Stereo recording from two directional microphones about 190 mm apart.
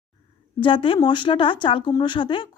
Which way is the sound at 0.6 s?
25° left (ahead or behind).